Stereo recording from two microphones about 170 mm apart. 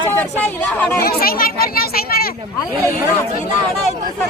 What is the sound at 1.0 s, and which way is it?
A child's voice, 60° left (ahead or behind).